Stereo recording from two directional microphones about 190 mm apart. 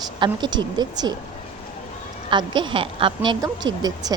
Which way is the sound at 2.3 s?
25° right (ahead or behind).